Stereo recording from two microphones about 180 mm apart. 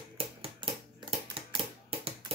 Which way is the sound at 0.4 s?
30° right (ahead or behind).